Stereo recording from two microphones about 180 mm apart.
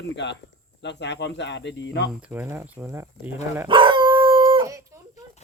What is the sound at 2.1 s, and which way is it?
Speech, 10° right (ahead or behind).